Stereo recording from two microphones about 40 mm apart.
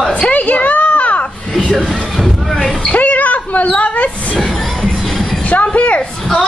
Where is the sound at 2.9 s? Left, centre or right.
Left.